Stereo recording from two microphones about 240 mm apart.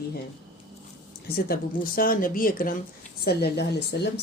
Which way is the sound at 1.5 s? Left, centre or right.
Left.